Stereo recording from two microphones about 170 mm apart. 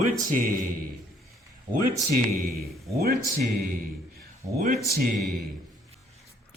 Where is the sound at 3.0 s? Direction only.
65° right (ahead or behind).